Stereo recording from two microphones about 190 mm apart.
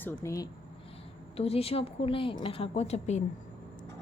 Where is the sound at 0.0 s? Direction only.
15° left (ahead or behind).